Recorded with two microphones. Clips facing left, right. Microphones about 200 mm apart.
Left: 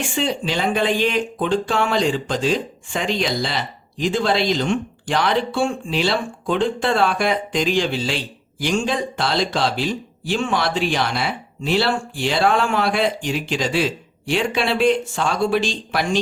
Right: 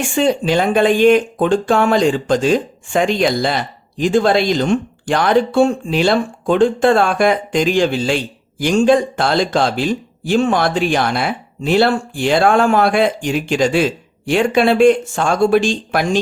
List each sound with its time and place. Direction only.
0.2 s speech: 50° right (ahead or behind)